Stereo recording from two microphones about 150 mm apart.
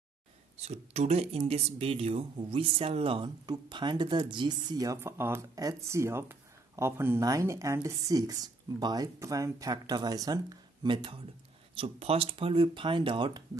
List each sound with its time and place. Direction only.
0.6 s speech: 45° right (ahead or behind)